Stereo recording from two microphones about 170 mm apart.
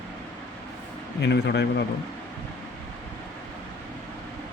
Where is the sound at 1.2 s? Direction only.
80° left.